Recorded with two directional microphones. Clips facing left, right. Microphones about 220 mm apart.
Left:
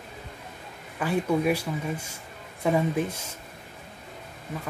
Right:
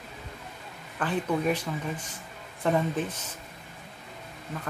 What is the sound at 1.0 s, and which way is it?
Speech, 10° left (ahead or behind).